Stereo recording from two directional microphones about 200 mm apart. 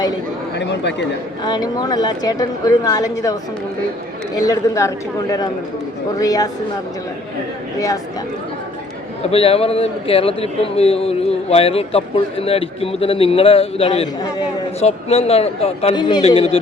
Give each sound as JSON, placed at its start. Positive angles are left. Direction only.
{"t": 0.5, "sound": "chatter", "side_deg": 60}
{"t": 1.5, "sound": "a man's voice", "side_deg": 20}
{"t": 4.4, "sound": "a woman's voice", "side_deg": 15}
{"t": 6.1, "sound": "a woman's voice", "side_deg": 15}
{"t": 9.3, "sound": "a man's voice", "side_deg": 30}